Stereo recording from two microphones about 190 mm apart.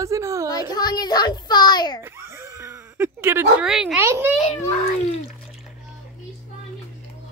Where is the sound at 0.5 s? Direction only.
20° left (ahead or behind).